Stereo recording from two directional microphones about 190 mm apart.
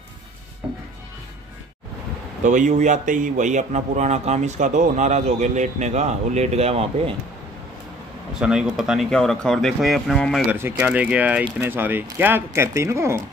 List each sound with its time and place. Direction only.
2.4 s speech: 40° right (ahead or behind)
8.4 s speech: 5° right (ahead or behind)
10.5 s speech: 10° right (ahead or behind)